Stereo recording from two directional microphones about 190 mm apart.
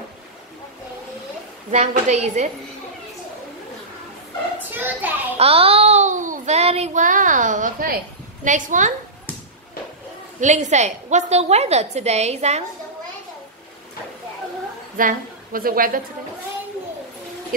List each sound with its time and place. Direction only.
1.7 s a woman's voice: 35° right (ahead or behind)
4.7 s a sound: 10° right (ahead or behind)
5.4 s child singing: 30° right (ahead or behind); by 8.0 s 45° right (ahead or behind)
8.5 s a woman's voice: 40° right (ahead or behind)
10.4 s a woman's voice: 40° right (ahead or behind)
15.0 s a woman's voice: 45° right (ahead or behind)